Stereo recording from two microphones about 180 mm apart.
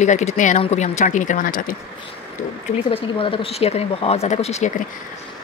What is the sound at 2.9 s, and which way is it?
Speech, 30° left (ahead or behind).